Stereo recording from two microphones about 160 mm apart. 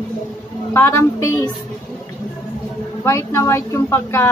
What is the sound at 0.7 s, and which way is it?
Speech, 15° left (ahead or behind).